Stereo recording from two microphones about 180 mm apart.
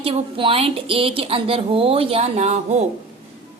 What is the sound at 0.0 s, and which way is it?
A woman's voice, 30° right (ahead or behind).